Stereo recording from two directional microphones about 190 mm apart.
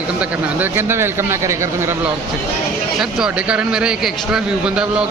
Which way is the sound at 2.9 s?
5° right (ahead or behind).